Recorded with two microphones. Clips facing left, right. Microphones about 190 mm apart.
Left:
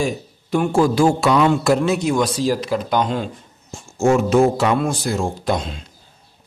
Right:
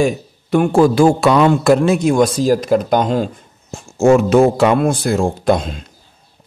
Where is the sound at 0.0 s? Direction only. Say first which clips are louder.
Right 6 dB; 60° right (ahead or behind).